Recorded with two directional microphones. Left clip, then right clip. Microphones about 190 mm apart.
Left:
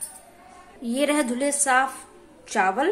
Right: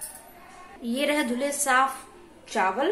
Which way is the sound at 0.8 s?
20° left (ahead or behind).